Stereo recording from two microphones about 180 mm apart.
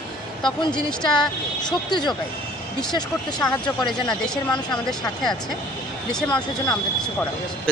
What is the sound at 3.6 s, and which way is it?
Speech, 25° left (ahead or behind).